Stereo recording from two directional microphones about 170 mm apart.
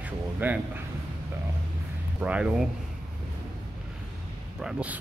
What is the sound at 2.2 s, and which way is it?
Speech, 10° right (ahead or behind).